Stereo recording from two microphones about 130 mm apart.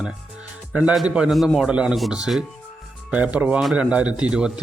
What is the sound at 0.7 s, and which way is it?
A man's voice, 10° right (ahead or behind).